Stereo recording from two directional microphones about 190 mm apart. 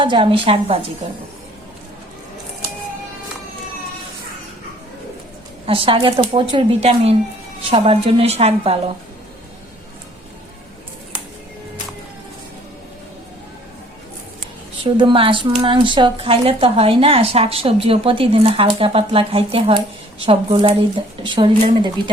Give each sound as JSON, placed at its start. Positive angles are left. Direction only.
{"t": 0.0, "sound": "a woman's voice", "side_deg": -25}
{"t": 5.6, "sound": "a woman's voice", "side_deg": -30}
{"t": 14.8, "sound": "a woman's voice", "side_deg": -25}